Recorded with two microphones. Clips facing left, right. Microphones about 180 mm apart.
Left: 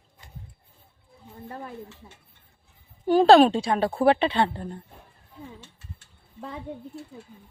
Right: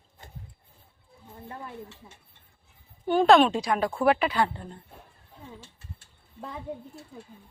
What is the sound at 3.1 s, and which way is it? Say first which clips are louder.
A woman's voice: left 3 dB; 35° left (ahead or behind).